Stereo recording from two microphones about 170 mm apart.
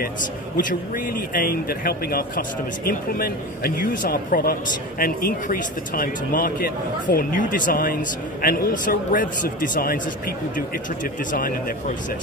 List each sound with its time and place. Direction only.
0.6 s speech: 50° left (ahead or behind)